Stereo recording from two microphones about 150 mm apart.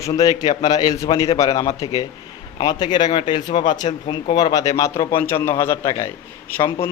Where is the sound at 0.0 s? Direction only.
25° left (ahead or behind).